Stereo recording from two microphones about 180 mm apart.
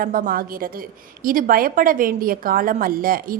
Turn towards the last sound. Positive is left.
turn(degrees=-50)  # may be behind; listen again after turning